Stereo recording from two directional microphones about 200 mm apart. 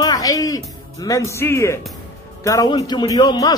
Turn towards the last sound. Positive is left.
turn(degrees=20)  # may be behind; listen again after turning